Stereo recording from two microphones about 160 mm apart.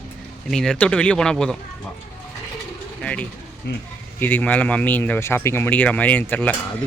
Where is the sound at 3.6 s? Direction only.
90° left.